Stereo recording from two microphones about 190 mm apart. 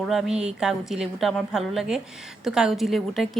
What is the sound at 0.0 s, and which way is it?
A woman's voice, 5° right (ahead or behind).